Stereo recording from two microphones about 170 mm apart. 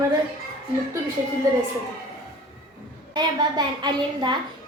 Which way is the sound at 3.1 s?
25° right (ahead or behind).